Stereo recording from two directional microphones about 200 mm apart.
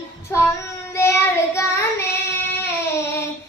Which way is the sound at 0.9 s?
15° left (ahead or behind).